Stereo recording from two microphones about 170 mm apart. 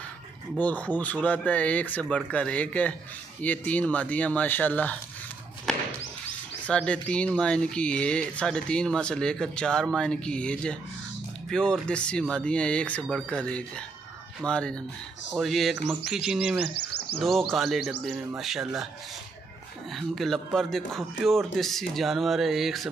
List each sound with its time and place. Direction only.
0.6 s speech: 10° left (ahead or behind)
6.6 s speech: 5° left (ahead or behind)
19.9 s speech: centre (ahead or behind)